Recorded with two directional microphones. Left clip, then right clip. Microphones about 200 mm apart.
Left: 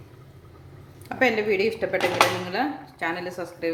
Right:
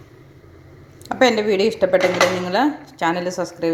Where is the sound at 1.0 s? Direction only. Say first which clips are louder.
Right 6 dB; 30° right (ahead or behind).